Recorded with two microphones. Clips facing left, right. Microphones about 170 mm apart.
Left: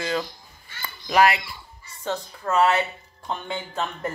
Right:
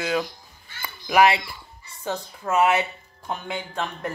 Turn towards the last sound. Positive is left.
turn(degrees=0)  # may be behind; listen again after turning